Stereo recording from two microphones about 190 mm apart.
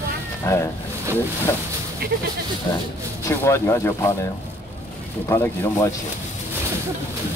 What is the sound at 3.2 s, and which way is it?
Speech, 15° left (ahead or behind).